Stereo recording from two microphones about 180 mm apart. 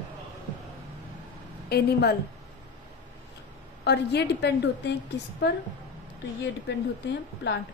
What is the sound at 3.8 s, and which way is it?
A woman's voice, 70° left (ahead or behind).